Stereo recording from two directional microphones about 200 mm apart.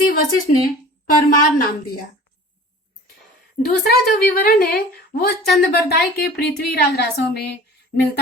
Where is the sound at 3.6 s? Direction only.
50° left (ahead or behind).